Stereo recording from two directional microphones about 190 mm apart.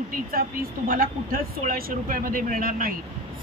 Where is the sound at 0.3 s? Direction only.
50° right (ahead or behind).